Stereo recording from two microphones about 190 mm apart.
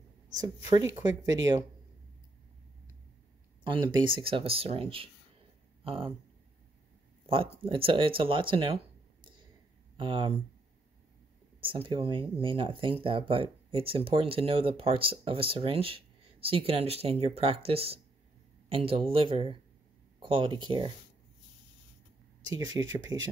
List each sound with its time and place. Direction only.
0.3 s speech: 20° right (ahead or behind)
3.6 s speech: 25° right (ahead or behind)
7.2 s speech: 30° right (ahead or behind)
9.9 s speech: 25° right (ahead or behind)
11.6 s speech: 25° right (ahead or behind)
22.8 s speech: 15° right (ahead or behind)